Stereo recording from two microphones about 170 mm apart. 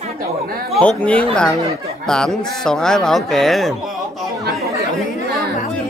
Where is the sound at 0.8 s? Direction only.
5° left (ahead or behind).